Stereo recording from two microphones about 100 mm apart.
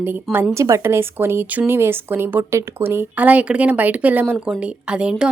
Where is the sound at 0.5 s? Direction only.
30° right (ahead or behind).